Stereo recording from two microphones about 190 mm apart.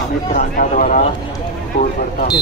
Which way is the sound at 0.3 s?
45° left (ahead or behind).